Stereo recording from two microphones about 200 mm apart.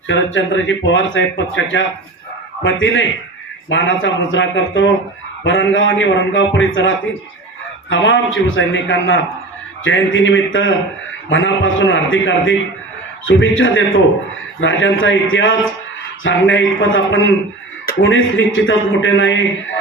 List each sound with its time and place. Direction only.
0.1 s a man's voice: 70° left (ahead or behind)